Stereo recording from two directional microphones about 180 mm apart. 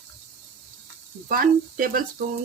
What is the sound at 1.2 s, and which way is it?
Speech, 50° right (ahead or behind).